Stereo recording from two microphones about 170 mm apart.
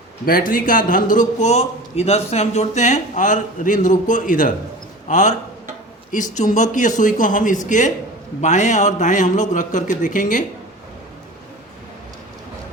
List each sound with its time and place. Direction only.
0.3 s a man's voice: 55° left (ahead or behind)
6.3 s a man's voice: 45° left (ahead or behind)